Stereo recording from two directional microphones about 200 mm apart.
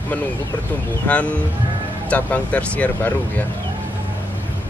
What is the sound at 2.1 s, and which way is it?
Speech, 5° left (ahead or behind).